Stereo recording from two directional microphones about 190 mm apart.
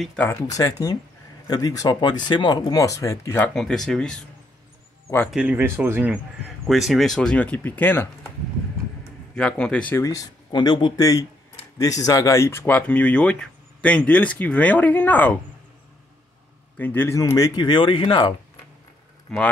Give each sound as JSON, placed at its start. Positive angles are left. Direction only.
{"t": 0.0, "sound": "speech", "side_deg": 5}
{"t": 3.5, "sound": "speech", "side_deg": 0}
{"t": 5.3, "sound": "speech", "side_deg": -10}
{"t": 9.3, "sound": "speech", "side_deg": 5}
{"t": 16.7, "sound": "speech", "side_deg": 10}
{"t": 19.3, "sound": "speech", "side_deg": 5}